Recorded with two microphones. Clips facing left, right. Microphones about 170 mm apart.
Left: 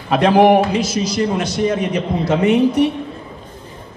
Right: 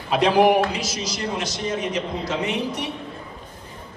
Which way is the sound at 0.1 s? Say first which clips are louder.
Left 5 dB; 50° left (ahead or behind).